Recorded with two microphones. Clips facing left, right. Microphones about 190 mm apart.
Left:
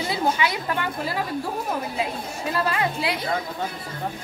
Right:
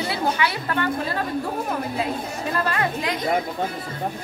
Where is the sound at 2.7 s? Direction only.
10° left (ahead or behind).